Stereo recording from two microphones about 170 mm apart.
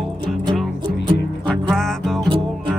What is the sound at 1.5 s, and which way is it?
Music, 5° left (ahead or behind).